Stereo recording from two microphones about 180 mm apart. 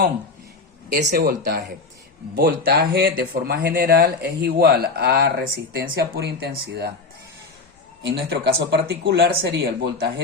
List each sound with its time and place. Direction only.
0.9 s speech: 55° right (ahead or behind)
8.0 s speech: 70° right (ahead or behind)